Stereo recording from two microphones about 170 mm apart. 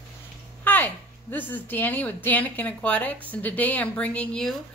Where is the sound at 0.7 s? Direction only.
10° left (ahead or behind).